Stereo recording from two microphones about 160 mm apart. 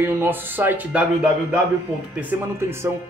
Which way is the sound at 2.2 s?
15° right (ahead or behind).